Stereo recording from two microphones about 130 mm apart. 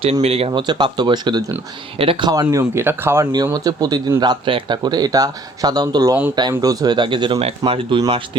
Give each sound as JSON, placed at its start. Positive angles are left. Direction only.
{"t": 0.0, "sound": "speech", "side_deg": -55}
{"t": 2.3, "sound": "speech", "side_deg": -25}
{"t": 3.4, "sound": "speech", "side_deg": -30}